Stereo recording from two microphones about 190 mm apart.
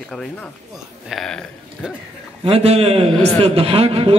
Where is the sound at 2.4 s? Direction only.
30° right (ahead or behind).